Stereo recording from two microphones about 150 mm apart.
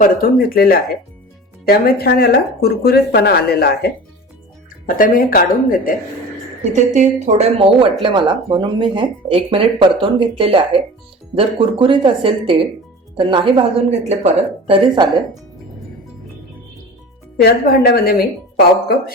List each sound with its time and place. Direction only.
0.0 s a woman's voice: 75° left (ahead or behind)
4.9 s speech: 70° left (ahead or behind)
6.7 s speech: 50° right (ahead or behind); by 15.1 s 35° right (ahead or behind)
17.4 s a woman's voice: 90° left